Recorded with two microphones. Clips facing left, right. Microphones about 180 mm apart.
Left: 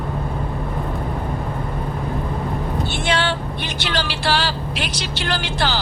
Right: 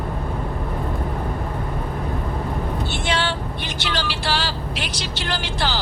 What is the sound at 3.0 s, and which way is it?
Female singing, 65° left (ahead or behind).